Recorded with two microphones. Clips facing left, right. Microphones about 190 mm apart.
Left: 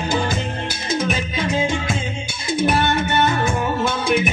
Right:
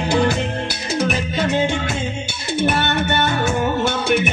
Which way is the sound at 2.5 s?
70° right (ahead or behind).